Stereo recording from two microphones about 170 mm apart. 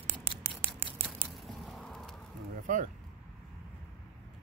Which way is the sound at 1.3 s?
Centre (ahead or behind).